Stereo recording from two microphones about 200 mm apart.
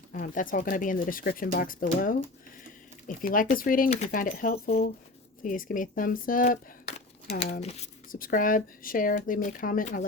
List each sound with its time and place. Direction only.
0.1 s speech: 40° left (ahead or behind)